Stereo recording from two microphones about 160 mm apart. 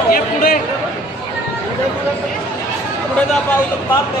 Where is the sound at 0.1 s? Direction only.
65° left (ahead or behind).